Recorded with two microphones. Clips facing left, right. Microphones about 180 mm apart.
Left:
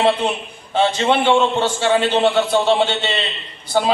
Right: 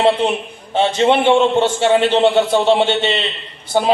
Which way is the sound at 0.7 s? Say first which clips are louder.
Right 3 dB; 20° right (ahead or behind).